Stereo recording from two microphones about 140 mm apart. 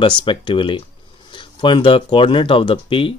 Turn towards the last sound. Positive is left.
turn(degrees=40)  # may be behind; listen again after turning